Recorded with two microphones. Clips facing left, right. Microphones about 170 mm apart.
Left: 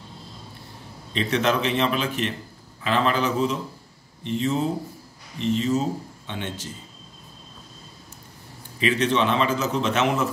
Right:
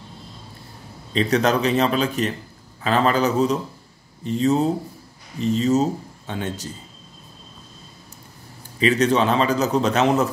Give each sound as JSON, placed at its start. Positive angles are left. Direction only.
{"t": 1.1, "sound": "a man's voice", "side_deg": -40}
{"t": 8.7, "sound": "a man's voice", "side_deg": -40}